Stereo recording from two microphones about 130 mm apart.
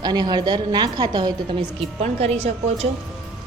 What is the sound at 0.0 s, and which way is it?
A woman's voice, 30° right (ahead or behind).